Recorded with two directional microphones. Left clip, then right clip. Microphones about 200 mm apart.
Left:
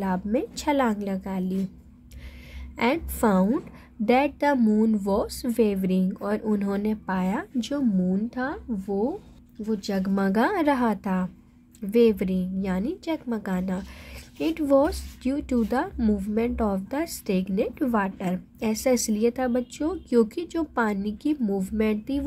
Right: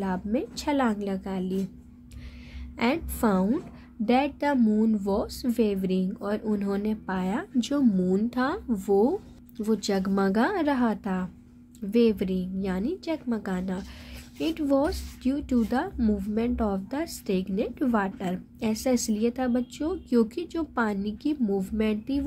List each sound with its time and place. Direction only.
0.0 s speech: 15° left (ahead or behind)
2.8 s speech: 15° left (ahead or behind)
7.7 s speech: 10° right (ahead or behind); by 22.2 s 15° left (ahead or behind)